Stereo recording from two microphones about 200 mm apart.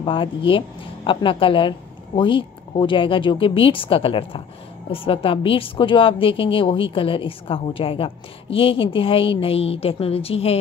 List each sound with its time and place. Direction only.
0.0 s a woman's voice: 25° left (ahead or behind)